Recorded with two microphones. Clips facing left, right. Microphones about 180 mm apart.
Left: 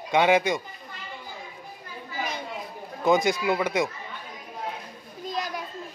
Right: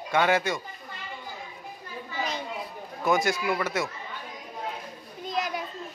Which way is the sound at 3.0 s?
20° left (ahead or behind).